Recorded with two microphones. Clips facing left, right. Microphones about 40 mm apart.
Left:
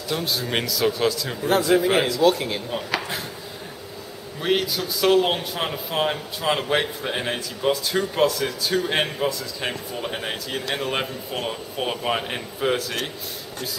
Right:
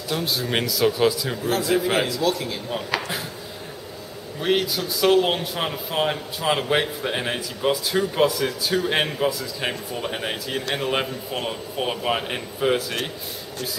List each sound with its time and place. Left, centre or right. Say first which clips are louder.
0.1 s speech: right 1 dB; centre
1.7 s a man's voice: left 1 dB; centre
2.2 s speech: left 4 dB; left
2.7 s speech: even; centre
4.4 s speech: right 1 dB; centre